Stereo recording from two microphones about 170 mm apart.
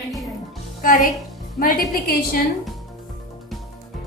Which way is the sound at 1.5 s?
55° left (ahead or behind).